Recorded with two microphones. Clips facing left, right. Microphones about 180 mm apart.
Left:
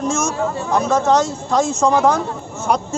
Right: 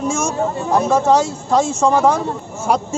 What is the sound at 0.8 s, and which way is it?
Speech, 10° right (ahead or behind).